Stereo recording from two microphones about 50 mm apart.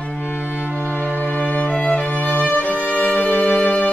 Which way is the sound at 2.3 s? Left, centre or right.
Left.